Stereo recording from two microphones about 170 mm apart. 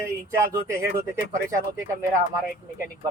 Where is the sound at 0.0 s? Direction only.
15° right (ahead or behind).